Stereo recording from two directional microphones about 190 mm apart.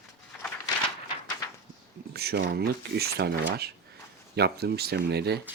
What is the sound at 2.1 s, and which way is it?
Speech, 55° right (ahead or behind).